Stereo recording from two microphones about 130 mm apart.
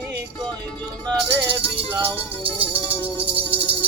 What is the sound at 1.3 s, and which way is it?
Music, 10° right (ahead or behind).